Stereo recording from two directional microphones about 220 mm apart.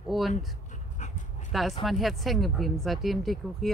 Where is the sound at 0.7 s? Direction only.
35° left (ahead or behind).